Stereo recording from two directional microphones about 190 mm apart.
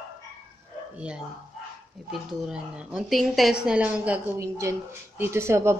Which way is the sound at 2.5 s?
5° right (ahead or behind).